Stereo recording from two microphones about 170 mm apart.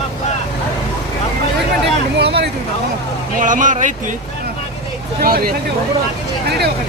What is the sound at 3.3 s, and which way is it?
Speech, 50° right (ahead or behind).